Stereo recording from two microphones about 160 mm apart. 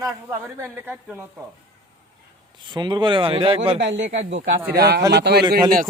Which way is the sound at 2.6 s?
30° right (ahead or behind).